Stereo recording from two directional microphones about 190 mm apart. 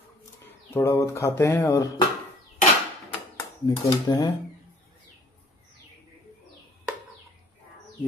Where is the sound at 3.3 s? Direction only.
20° left (ahead or behind).